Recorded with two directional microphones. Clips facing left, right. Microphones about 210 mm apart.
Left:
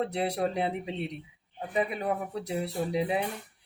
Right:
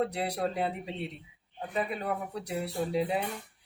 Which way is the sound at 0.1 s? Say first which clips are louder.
Left 3 dB; 25° left (ahead or behind).